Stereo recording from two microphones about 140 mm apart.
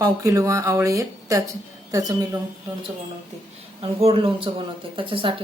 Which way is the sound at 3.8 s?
40° right (ahead or behind).